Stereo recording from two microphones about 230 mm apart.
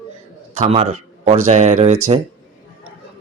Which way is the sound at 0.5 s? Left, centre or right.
Right.